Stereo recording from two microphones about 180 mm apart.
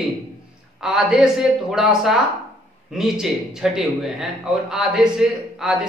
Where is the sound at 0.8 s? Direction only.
Centre (ahead or behind).